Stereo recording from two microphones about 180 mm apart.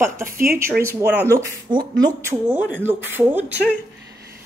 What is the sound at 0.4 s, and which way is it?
Speech, 55° right (ahead or behind).